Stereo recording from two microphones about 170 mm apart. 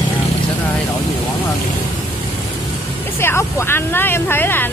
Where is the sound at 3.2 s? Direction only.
15° left (ahead or behind).